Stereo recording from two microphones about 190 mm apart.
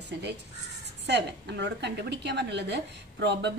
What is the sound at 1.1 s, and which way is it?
A woman's voice, 65° right (ahead or behind).